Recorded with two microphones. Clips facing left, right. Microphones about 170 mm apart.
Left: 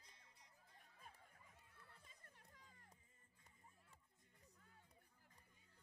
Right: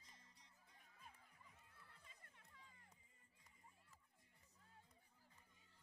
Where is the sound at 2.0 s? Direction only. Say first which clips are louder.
Left 1 dB; 40° left (ahead or behind).